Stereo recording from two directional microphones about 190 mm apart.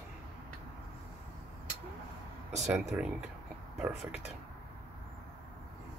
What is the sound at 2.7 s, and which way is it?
Speech, 5° right (ahead or behind).